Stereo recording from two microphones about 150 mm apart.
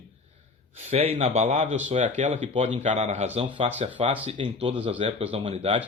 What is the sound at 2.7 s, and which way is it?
Speech, 50° right (ahead or behind).